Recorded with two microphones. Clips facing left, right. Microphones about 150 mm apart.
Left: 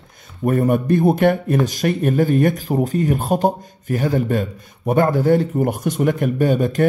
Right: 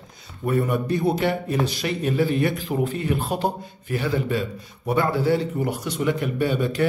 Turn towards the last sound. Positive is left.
turn(degrees=45)  # may be behind; listen again after turning